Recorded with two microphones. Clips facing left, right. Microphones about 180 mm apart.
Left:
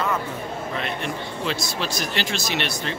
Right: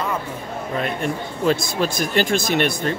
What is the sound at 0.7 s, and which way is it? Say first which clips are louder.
Speech: right 7 dB; 45° right (ahead or behind).